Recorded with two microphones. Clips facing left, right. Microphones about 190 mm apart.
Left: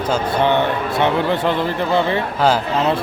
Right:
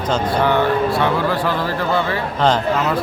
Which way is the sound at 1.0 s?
20° left (ahead or behind).